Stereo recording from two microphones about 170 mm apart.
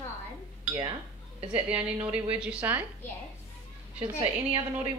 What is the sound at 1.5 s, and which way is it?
Speech, 10° right (ahead or behind).